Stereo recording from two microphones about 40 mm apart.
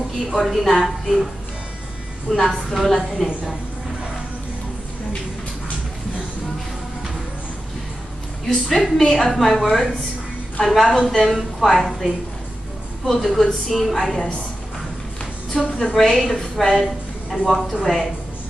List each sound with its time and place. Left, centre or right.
0.5 s a woman's voice: centre
8.6 s a woman's voice: centre
15.5 s a woman's voice: centre
16.0 s a woman's voice: centre
16.7 s a sound: centre
17.8 s a woman's voice: centre